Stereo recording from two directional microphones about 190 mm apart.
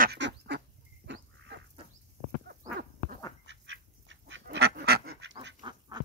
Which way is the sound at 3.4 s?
80° right.